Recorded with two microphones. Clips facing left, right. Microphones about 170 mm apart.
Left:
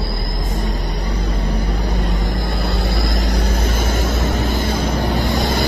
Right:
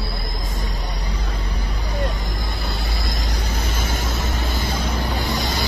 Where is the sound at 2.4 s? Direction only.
60° left (ahead or behind).